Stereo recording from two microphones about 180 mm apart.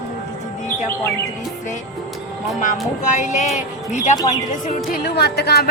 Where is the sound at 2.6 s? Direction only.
45° left (ahead or behind).